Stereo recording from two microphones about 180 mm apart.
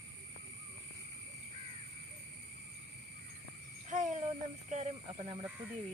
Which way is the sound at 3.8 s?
40° right (ahead or behind).